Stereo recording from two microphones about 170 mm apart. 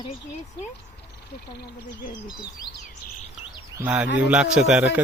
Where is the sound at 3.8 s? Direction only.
10° right (ahead or behind).